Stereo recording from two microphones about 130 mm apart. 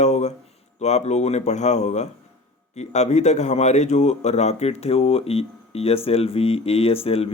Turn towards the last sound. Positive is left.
turn(degrees=50)  # may be behind; listen again after turning